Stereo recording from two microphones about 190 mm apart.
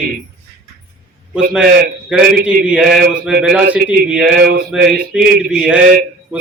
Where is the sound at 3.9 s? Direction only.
5° right (ahead or behind).